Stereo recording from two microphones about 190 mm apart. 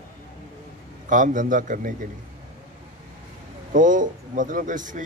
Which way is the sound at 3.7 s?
45° right (ahead or behind).